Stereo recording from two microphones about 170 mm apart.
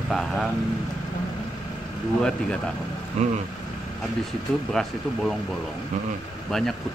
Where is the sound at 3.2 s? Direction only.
40° right (ahead or behind).